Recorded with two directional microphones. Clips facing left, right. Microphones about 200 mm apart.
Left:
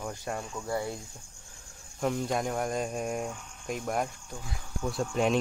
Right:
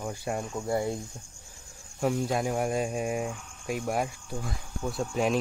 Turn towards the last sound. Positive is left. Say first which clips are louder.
# even
turn(degrees=0)  # may be behind; listen again after turning